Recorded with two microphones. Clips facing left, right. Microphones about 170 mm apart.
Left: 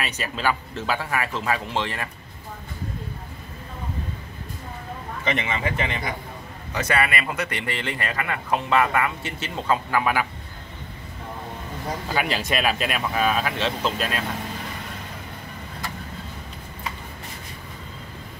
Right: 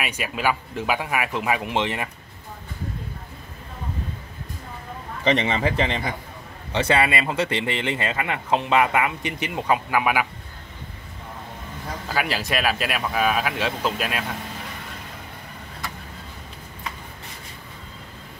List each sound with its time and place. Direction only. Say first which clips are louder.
0.0 s speech: right 1 dB; 10° right (ahead or behind)
5.2 s a man's voice: right 5 dB; 30° right (ahead or behind); by 10.2 s 10° right (ahead or behind)
12.1 s speech: even; centre (ahead or behind)